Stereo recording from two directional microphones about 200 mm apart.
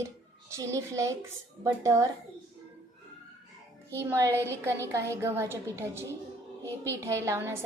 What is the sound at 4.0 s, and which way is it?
Speech, 15° right (ahead or behind).